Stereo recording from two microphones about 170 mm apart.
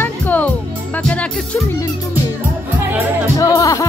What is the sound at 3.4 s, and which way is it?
Music, 20° left (ahead or behind).